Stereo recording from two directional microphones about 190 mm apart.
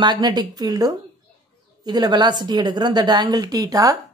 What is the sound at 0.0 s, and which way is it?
A woman's voice, 20° right (ahead or behind).